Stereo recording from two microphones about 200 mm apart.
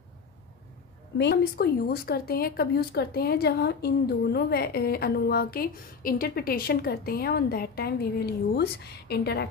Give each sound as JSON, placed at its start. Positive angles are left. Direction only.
{"t": 1.1, "sound": "speech", "side_deg": 55}